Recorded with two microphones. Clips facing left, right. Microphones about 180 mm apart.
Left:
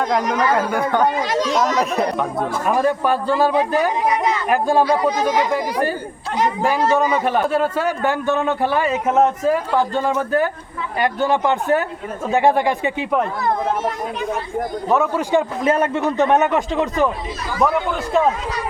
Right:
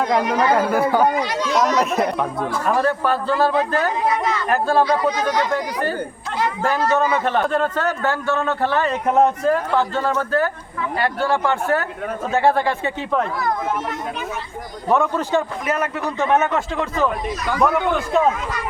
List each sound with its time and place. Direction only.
0.0 s speech: centre (ahead or behind)
1.2 s speech: 40° left (ahead or behind)
1.5 s speech: centre (ahead or behind)
2.6 s a man's voice: 15° left (ahead or behind)
14.8 s a man's voice: 5° left (ahead or behind)
15.6 s a man's voice: 30° left (ahead or behind)
17.6 s speech: centre (ahead or behind)